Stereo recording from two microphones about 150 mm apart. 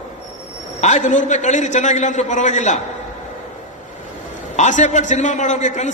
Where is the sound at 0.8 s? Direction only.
50° left (ahead or behind).